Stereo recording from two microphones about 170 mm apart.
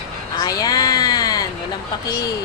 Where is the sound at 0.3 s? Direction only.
20° left (ahead or behind).